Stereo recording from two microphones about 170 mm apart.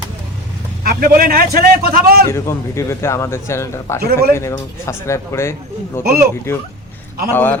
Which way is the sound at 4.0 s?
65° right (ahead or behind).